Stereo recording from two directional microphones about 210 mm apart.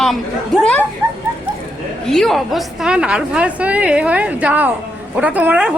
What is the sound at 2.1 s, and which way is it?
A woman's voice, centre (ahead or behind).